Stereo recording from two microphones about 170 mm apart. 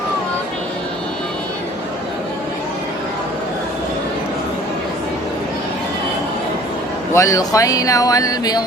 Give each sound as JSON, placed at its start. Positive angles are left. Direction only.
{"t": 7.1, "sound": "speech", "side_deg": 20}